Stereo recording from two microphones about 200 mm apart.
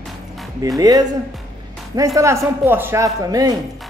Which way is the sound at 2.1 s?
15° right (ahead or behind).